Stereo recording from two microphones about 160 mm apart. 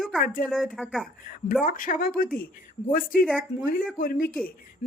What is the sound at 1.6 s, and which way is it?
A woman's voice, 60° left (ahead or behind).